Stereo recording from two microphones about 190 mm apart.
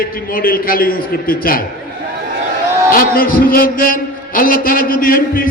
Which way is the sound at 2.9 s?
50° left (ahead or behind).